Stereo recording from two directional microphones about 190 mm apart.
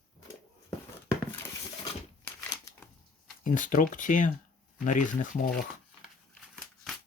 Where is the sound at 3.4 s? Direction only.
45° left (ahead or behind).